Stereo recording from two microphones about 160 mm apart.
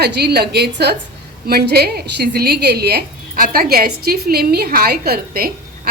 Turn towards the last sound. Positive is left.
turn(degrees=-70)  # may be behind; listen again after turning